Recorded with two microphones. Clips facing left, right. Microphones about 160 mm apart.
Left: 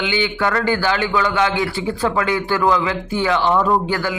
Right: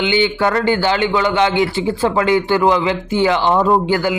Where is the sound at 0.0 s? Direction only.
30° right (ahead or behind).